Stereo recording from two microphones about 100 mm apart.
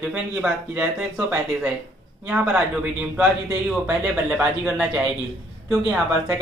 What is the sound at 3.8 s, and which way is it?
Speech, 10° right (ahead or behind).